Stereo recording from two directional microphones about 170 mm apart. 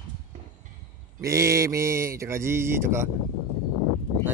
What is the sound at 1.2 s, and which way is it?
Speech, 15° right (ahead or behind).